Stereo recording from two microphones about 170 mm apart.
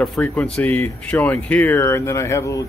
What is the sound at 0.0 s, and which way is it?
Speech, 5° left (ahead or behind).